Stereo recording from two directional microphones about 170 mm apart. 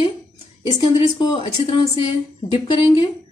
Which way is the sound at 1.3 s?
30° left (ahead or behind).